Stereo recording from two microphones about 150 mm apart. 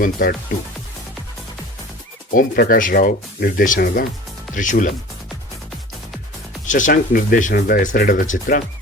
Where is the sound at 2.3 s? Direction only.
70° left (ahead or behind).